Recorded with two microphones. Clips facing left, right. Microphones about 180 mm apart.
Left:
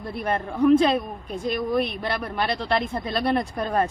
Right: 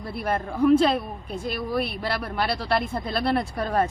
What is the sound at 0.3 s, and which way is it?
A woman's voice, 5° right (ahead or behind).